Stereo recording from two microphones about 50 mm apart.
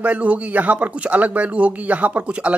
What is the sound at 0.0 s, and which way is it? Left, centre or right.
Speech, right.